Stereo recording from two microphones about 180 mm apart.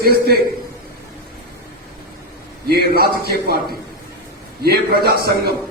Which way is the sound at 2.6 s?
60° right (ahead or behind).